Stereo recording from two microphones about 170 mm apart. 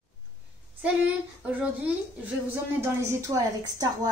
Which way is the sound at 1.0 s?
5° right (ahead or behind).